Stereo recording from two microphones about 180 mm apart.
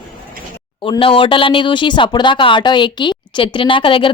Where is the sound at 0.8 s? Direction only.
30° left (ahead or behind).